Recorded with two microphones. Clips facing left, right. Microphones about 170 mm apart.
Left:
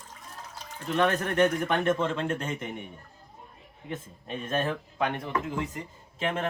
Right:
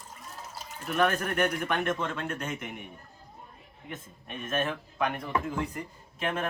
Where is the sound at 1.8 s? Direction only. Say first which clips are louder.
Left 5 dB; 25° left (ahead or behind).